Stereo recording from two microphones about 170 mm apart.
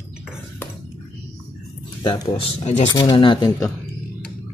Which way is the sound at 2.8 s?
25° left (ahead or behind).